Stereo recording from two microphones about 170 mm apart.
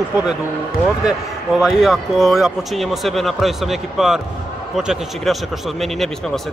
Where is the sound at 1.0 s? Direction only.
5° right (ahead or behind).